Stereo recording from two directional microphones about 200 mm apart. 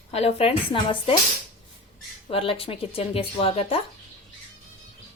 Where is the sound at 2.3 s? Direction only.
25° left (ahead or behind).